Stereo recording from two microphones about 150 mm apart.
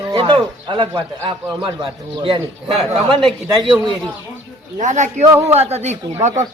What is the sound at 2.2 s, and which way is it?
Speech, 35° right (ahead or behind).